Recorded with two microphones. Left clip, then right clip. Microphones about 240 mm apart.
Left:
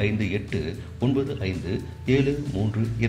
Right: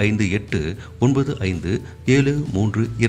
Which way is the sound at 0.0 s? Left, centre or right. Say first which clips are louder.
Right 5 dB; right.